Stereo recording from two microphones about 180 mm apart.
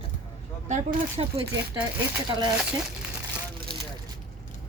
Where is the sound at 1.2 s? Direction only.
35° right (ahead or behind).